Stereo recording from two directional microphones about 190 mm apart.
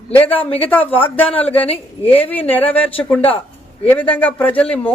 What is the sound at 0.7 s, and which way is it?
A man's voice, 10° left (ahead or behind).